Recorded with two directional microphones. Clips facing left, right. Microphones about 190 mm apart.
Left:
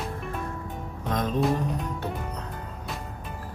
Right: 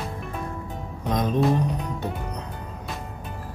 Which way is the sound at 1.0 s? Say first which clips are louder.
Right 3 dB; 15° right (ahead or behind).